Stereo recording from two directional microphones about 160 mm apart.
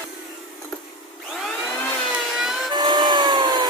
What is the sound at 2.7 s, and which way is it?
Wood, 25° right (ahead or behind).